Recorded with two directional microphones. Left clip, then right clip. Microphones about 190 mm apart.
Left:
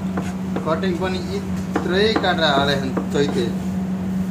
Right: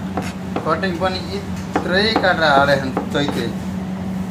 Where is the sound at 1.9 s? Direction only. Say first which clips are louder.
Right 2 dB; 15° right (ahead or behind).